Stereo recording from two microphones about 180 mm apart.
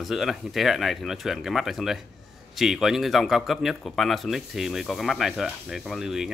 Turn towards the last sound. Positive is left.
turn(degrees=-5)  # may be behind; listen again after turning